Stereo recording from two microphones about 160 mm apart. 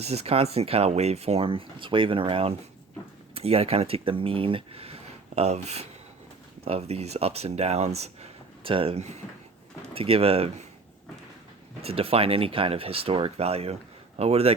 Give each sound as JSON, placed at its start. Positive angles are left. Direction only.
{"t": 0.0, "sound": "speech", "side_deg": -40}
{"t": 11.8, "sound": "speech", "side_deg": -35}